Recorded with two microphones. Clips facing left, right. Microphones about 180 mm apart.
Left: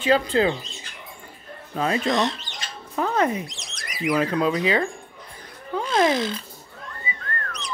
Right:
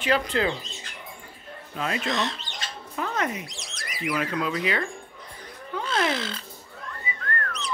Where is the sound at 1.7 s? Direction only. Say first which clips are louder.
Left 6 dB; 35° left (ahead or behind).